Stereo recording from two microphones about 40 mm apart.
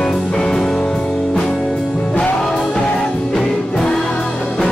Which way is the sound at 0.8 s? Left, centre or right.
Left.